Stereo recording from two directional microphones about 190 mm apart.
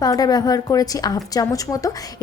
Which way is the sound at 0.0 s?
20° left (ahead or behind).